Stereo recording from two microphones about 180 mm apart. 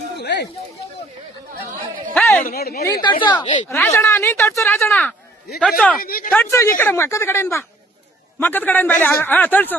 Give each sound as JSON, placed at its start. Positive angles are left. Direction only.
{"t": 0.2, "sound": "a sound", "side_deg": 70}
{"t": 2.1, "sound": "a sound", "side_deg": 15}
{"t": 2.5, "sound": "speech", "side_deg": 60}
{"t": 2.8, "sound": "speech", "side_deg": 25}
{"t": 6.0, "sound": "speech", "side_deg": 55}
{"t": 6.3, "sound": "speech", "side_deg": 10}